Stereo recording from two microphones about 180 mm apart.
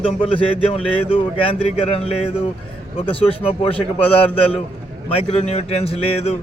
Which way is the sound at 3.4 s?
30° left (ahead or behind).